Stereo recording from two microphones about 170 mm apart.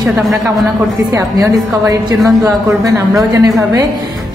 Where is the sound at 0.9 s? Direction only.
15° right (ahead or behind).